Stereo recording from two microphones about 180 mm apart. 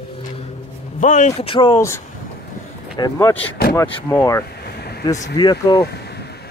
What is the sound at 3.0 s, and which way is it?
Speech, 15° left (ahead or behind).